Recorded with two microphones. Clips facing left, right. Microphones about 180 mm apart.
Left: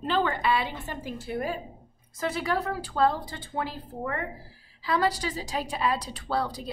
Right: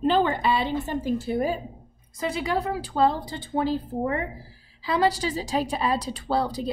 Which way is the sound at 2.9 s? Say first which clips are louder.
Right 2 dB; 25° right (ahead or behind).